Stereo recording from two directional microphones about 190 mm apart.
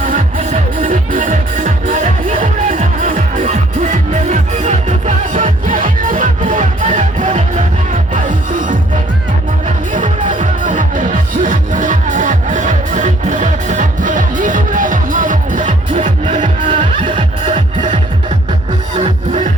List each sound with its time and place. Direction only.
0.1 s music: 40° right (ahead or behind)
16.6 s music: 25° right (ahead or behind)